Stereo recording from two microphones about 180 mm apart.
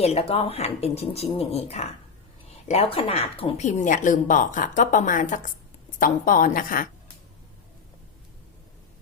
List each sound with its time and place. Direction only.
0.0 s speech: 35° left (ahead or behind)
3.7 s a woman's voice: 45° left (ahead or behind)